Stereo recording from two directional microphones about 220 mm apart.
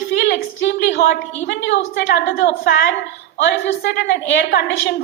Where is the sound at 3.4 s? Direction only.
50° left (ahead or behind).